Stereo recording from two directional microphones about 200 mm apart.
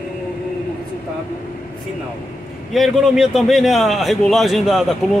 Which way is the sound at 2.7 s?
Centre (ahead or behind).